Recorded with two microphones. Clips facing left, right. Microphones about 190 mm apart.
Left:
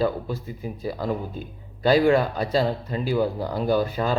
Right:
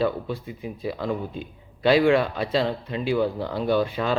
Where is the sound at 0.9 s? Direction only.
5° left (ahead or behind).